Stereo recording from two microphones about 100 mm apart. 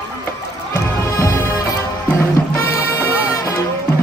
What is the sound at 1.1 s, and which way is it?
Music, 30° left (ahead or behind).